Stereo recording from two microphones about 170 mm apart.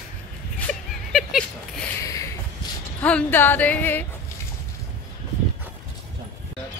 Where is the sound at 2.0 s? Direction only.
20° left (ahead or behind).